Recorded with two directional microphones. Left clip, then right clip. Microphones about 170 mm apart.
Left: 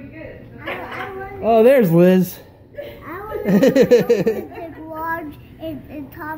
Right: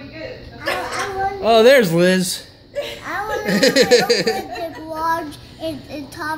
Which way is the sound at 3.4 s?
30° left (ahead or behind).